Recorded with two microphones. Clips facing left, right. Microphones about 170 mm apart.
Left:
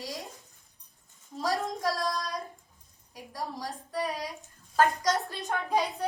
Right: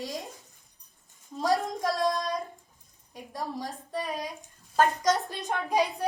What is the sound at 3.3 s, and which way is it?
A woman's voice, 25° right (ahead or behind).